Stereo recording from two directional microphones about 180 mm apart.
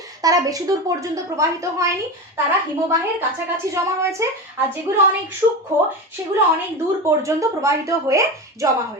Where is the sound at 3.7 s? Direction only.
15° right (ahead or behind).